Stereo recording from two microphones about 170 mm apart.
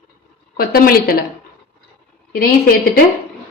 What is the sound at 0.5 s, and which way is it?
Speech, 60° left (ahead or behind).